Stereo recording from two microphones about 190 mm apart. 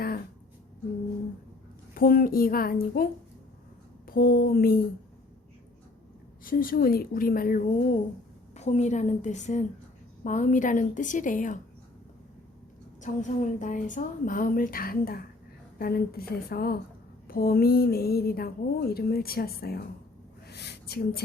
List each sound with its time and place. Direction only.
2.0 s a woman's voice: 50° left (ahead or behind)
6.4 s a woman's voice: 50° left (ahead or behind)
13.0 s a woman's voice: 40° left (ahead or behind)
20.5 s a sound: 60° left (ahead or behind)